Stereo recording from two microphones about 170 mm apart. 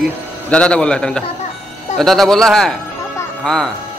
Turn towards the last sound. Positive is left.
turn(degrees=5)  # may be behind; listen again after turning